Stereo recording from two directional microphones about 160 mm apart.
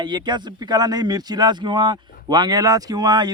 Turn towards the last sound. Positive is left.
turn(degrees=-25)  # may be behind; listen again after turning